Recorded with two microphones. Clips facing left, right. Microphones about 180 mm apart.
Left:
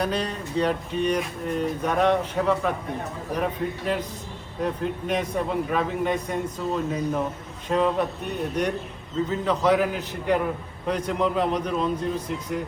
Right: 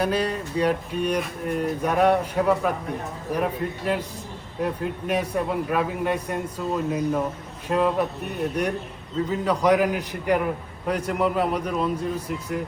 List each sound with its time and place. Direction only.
0.0 s a man's voice: 10° right (ahead or behind)
9.3 s a man's voice: 10° right (ahead or behind)